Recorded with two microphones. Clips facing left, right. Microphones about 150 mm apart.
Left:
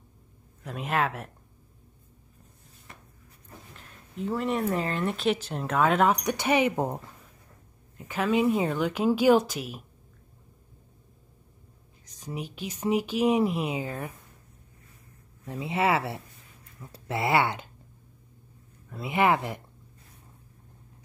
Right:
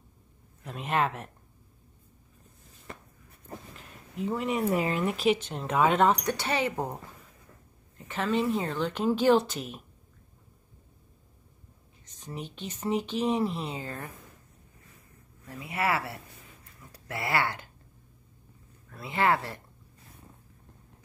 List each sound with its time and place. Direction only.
0.7 s speech: centre (ahead or behind)
3.7 s speech: centre (ahead or behind)
6.2 s speech: 15° left (ahead or behind)
8.1 s speech: 10° left (ahead or behind)
12.2 s speech: 10° left (ahead or behind)
15.4 s speech: 25° left (ahead or behind)
18.9 s speech: 20° left (ahead or behind)